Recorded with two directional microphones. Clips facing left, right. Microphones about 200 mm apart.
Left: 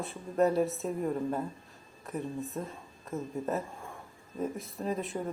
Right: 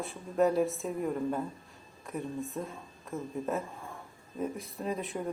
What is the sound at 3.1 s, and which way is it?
Speech, 20° left (ahead or behind).